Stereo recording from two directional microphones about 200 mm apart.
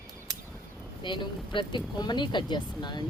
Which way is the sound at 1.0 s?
25° left (ahead or behind).